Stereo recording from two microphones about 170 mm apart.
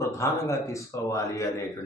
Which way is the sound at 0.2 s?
20° left (ahead or behind).